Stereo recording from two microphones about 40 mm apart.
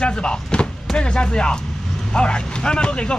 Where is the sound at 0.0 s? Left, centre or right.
Left.